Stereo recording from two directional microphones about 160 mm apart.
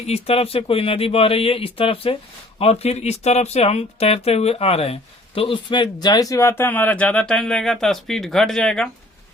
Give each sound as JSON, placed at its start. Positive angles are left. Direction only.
{"t": 0.1, "sound": "speech", "side_deg": 40}